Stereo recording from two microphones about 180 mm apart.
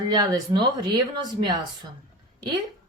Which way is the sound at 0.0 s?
25° right (ahead or behind).